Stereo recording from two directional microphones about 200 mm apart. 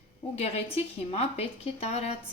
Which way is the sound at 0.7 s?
30° left (ahead or behind).